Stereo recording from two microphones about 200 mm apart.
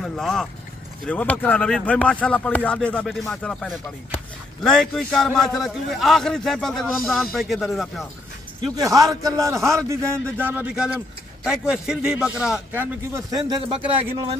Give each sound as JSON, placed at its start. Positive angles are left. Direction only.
{"t": 0.0, "sound": "speech", "side_deg": 0}
{"t": 8.7, "sound": "a man's voice", "side_deg": -15}
{"t": 13.1, "sound": "speech", "side_deg": -20}